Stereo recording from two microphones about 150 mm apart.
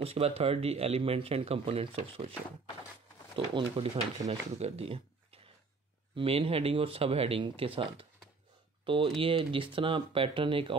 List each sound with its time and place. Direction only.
0.0 s speech: 40° right (ahead or behind)
3.3 s speech: 40° right (ahead or behind)